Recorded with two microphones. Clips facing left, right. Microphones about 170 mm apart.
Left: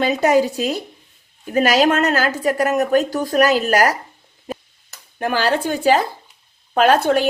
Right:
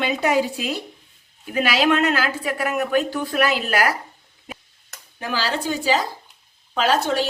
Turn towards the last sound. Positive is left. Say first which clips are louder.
# left 6 dB
turn(degrees=55)  # may be behind; listen again after turning